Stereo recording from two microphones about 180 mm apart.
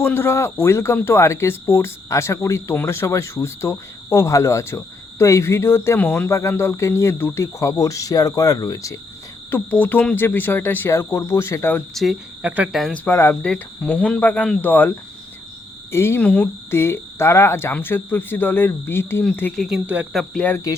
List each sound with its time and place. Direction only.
0.0 s speech: 15° left (ahead or behind)
11.9 s speech: 5° right (ahead or behind)
12.8 s speech: 10° left (ahead or behind)
19.6 s speech: 5° right (ahead or behind)
20.3 s speech: 10° left (ahead or behind)